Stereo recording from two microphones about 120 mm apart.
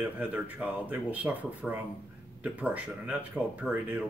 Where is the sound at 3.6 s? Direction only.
Centre (ahead or behind).